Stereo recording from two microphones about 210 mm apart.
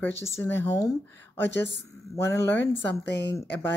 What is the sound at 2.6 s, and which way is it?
Speech, 55° left (ahead or behind).